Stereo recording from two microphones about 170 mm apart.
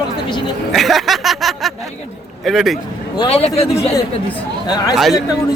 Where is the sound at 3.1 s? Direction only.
35° left (ahead or behind).